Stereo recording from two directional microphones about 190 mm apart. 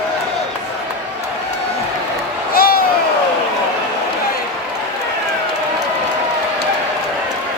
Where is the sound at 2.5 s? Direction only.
50° left (ahead or behind).